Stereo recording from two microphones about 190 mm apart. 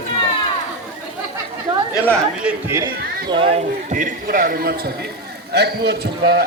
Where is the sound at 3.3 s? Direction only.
30° right (ahead or behind).